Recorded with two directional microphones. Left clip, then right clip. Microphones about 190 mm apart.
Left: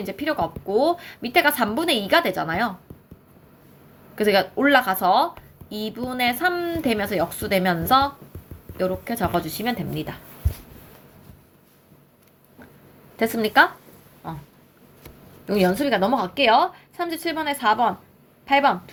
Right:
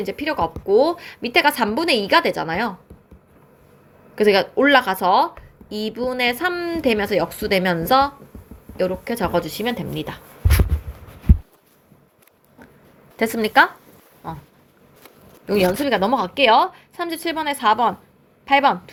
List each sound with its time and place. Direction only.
0.0 s speech: 35° right (ahead or behind)
4.1 s speech: 35° right (ahead or behind)
13.1 s speech: 40° right (ahead or behind)
15.4 s speech: 40° right (ahead or behind)